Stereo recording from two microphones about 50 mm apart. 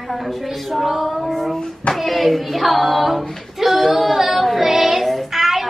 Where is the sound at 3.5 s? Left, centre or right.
Centre.